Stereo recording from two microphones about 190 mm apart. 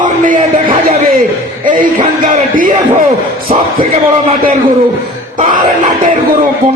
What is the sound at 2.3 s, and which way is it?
Speech, 45° right (ahead or behind).